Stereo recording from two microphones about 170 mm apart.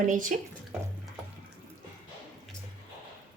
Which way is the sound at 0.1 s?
50° right (ahead or behind).